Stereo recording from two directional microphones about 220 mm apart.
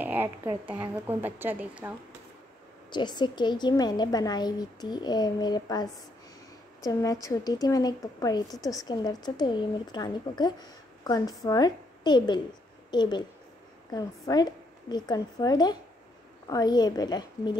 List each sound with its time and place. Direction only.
0.0 s a woman's voice: 10° right (ahead or behind)
2.9 s a woman's voice: 20° left (ahead or behind)